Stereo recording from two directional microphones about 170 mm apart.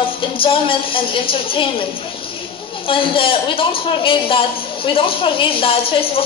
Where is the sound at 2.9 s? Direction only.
30° left (ahead or behind).